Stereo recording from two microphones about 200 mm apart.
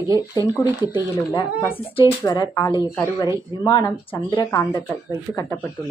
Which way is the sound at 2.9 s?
10° left (ahead or behind).